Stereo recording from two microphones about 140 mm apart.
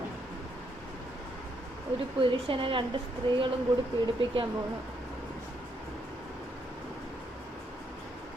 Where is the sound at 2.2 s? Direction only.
35° right (ahead or behind).